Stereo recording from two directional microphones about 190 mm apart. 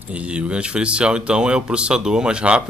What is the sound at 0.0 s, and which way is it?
Speech, 5° right (ahead or behind).